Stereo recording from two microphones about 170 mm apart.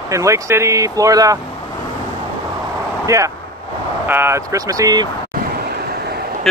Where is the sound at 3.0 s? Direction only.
20° right (ahead or behind).